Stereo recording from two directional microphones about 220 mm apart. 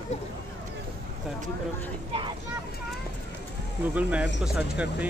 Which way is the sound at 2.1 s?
20° right (ahead or behind).